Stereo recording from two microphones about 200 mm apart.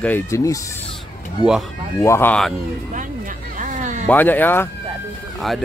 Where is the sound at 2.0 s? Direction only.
10° left (ahead or behind).